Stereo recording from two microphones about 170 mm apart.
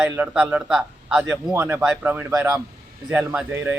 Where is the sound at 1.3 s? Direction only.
15° right (ahead or behind).